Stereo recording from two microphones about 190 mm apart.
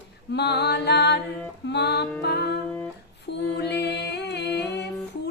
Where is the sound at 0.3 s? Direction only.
60° left (ahead or behind).